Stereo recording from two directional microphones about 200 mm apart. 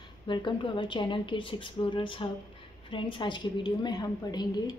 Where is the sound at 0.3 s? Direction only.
25° left (ahead or behind).